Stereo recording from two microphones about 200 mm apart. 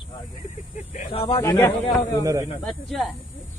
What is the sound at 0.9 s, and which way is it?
Speech, 30° left (ahead or behind).